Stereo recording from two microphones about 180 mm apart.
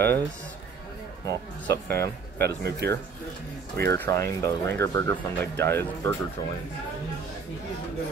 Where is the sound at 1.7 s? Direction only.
65° right (ahead or behind).